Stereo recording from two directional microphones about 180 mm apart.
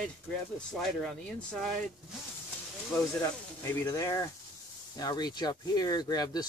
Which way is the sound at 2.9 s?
15° left (ahead or behind).